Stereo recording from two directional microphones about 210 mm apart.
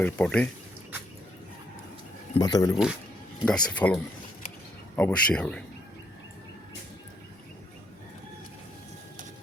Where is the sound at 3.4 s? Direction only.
5° left (ahead or behind).